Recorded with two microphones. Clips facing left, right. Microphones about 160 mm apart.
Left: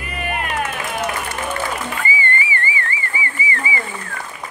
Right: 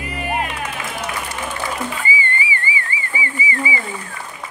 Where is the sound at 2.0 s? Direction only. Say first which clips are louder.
Left 1 dB; 15° right (ahead or behind).